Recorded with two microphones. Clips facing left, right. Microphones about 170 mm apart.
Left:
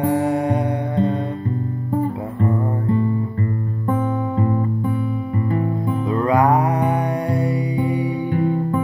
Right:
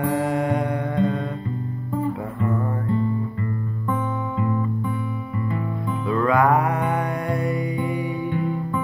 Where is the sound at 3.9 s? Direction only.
45° left (ahead or behind).